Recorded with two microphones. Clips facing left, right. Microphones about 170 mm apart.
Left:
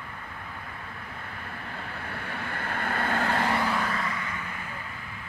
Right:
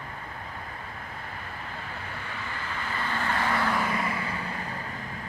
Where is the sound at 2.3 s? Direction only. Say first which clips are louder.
Left 3 dB; 60° left (ahead or behind).